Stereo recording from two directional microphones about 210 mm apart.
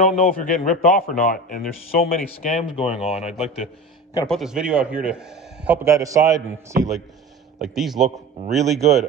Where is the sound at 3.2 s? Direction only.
5° right (ahead or behind).